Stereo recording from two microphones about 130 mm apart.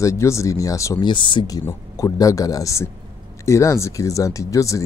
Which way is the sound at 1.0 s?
35° left (ahead or behind).